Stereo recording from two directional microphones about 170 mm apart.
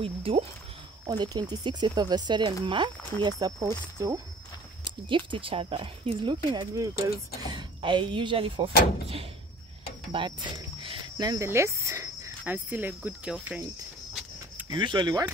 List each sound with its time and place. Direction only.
0.0 s speech: 35° right (ahead or behind)
10.1 s speech: 30° right (ahead or behind); by 13.7 s 10° right (ahead or behind)
14.7 s speech: 25° right (ahead or behind)